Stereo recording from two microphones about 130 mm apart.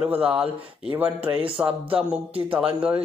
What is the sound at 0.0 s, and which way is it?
Speech, 10° right (ahead or behind).